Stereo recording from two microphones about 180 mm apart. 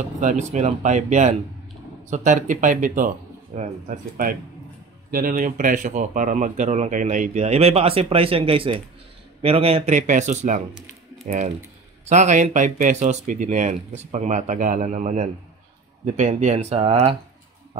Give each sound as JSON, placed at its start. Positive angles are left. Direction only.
{"t": 0.2, "sound": "speech", "side_deg": -45}